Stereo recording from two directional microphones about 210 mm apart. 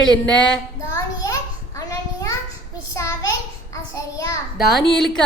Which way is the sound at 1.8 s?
15° left (ahead or behind).